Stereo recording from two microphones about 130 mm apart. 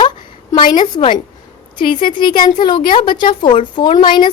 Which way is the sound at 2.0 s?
35° left (ahead or behind).